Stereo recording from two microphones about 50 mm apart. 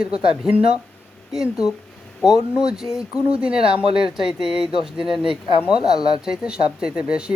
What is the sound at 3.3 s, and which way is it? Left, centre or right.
Speech, centre.